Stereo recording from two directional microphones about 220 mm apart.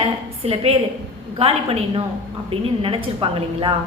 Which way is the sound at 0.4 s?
25° right (ahead or behind).